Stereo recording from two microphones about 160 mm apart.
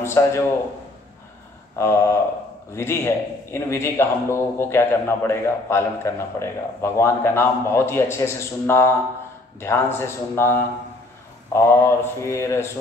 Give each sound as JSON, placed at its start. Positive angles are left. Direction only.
{"t": 0.0, "sound": "a man's voice", "side_deg": 15}
{"t": 1.8, "sound": "a man's voice", "side_deg": 15}